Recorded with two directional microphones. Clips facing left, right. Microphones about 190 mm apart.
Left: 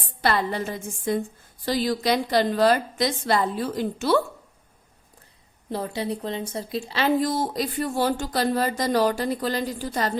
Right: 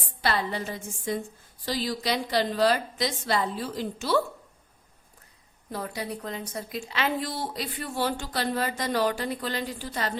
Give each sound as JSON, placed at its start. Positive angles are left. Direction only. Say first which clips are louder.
{"t": 0.2, "sound": "a woman's voice", "louder": "left 4 dB", "side_deg": 50}
{"t": 5.7, "sound": "speech", "louder": "left 5 dB", "side_deg": 25}